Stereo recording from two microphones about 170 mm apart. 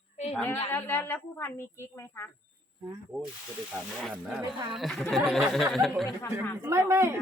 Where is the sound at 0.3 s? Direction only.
10° left (ahead or behind).